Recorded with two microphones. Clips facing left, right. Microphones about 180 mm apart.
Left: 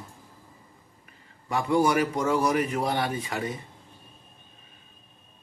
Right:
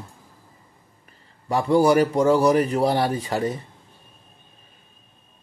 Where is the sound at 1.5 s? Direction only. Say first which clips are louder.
Right 6 dB; 35° right (ahead or behind).